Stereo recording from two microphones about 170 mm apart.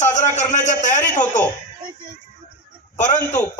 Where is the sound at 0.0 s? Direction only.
45° left (ahead or behind).